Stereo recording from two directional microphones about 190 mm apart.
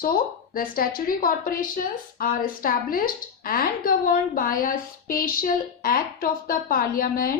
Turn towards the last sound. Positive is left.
turn(degrees=50)  # may be behind; listen again after turning